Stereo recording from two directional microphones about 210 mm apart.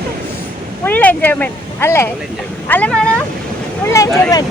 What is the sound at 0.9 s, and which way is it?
Speech, 10° left (ahead or behind).